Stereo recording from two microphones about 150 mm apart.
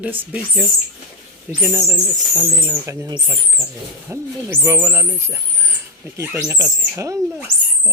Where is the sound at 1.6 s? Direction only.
20° right (ahead or behind).